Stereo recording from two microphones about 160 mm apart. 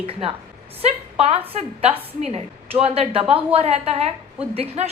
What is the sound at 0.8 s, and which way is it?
A woman's voice, 40° right (ahead or behind).